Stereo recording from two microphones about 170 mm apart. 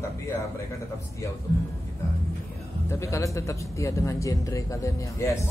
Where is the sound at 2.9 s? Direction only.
15° left (ahead or behind).